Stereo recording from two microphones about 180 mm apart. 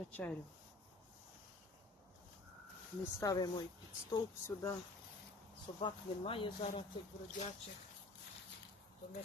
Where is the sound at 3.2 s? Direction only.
20° left (ahead or behind).